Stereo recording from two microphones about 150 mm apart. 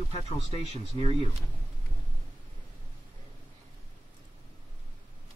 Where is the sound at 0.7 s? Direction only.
40° right (ahead or behind).